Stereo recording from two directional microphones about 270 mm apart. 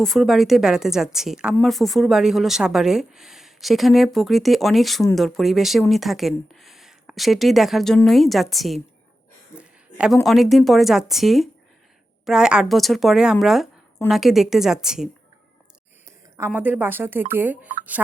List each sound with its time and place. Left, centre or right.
0.0 s a woman's voice: centre
9.6 s a sound: centre
10.2 s a woman's voice: centre
16.6 s speech: centre